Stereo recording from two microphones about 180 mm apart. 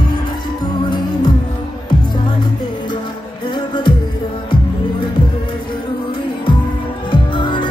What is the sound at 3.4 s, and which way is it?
Music, 25° left (ahead or behind).